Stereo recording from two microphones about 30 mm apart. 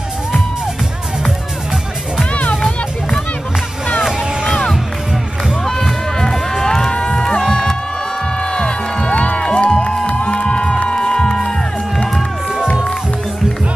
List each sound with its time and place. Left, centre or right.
5.7 s music: centre
9.1 s music: left
10.0 s crowd: left
10.9 s music: left